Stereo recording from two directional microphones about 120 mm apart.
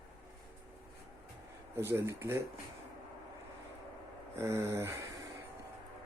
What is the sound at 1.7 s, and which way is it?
Speech, 20° right (ahead or behind).